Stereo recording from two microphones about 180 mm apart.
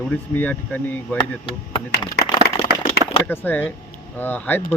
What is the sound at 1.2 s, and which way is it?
Speech, 30° left (ahead or behind).